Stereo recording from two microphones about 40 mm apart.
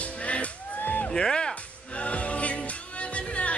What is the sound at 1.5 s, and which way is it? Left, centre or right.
Music, left.